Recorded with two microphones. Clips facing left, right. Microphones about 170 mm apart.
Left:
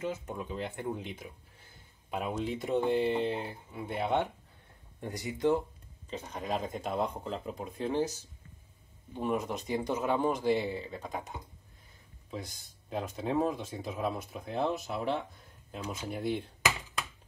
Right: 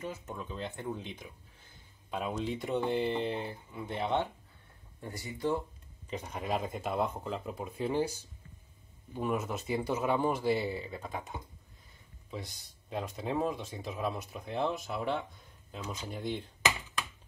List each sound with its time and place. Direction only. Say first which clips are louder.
0.0 s speech: left 4 dB; 20° left (ahead or behind)
6.0 s speech: even; 10° right (ahead or behind); by 16.4 s 5° left (ahead or behind)